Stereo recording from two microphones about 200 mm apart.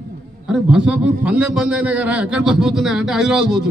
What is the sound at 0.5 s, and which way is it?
A man's voice, 5° right (ahead or behind).